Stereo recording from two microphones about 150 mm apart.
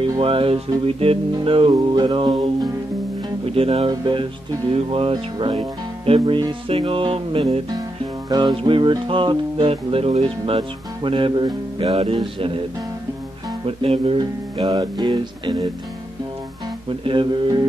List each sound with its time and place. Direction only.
0.2 s music: 35° right (ahead or behind)
8.3 s music: 30° right (ahead or behind)
13.7 s music: 40° right (ahead or behind)
17.0 s music: 35° right (ahead or behind)